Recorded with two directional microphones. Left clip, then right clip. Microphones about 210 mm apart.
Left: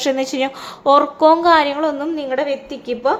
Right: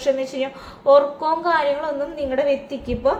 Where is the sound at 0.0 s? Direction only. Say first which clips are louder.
Left 3 dB; 40° left (ahead or behind).